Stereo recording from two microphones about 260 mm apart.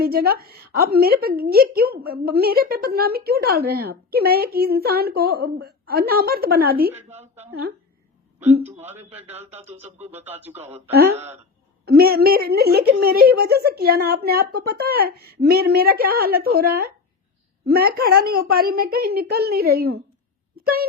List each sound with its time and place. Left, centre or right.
0.0 s a woman's voice: right
8.6 s speech: centre
10.1 s speech: centre
11.9 s a woman's voice: right
20.6 s wail: right